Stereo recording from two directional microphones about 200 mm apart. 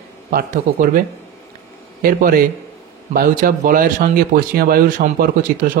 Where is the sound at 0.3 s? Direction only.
45° right (ahead or behind).